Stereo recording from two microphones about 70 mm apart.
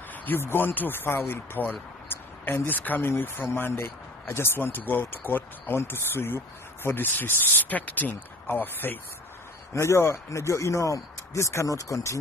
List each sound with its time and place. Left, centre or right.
0.1 s speech: left
9.8 s speech: left